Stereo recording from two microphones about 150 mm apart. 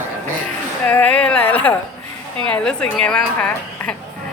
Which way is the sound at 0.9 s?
10° left (ahead or behind).